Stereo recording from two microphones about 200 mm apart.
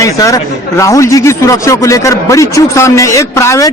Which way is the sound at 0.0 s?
15° left (ahead or behind).